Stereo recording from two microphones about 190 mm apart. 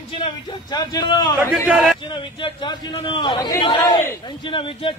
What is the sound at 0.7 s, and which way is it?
Speech, 20° left (ahead or behind).